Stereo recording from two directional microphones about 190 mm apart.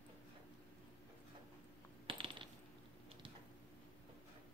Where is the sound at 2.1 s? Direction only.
25° right (ahead or behind).